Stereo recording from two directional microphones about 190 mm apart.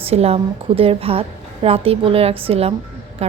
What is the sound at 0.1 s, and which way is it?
A woman's voice, 30° right (ahead or behind).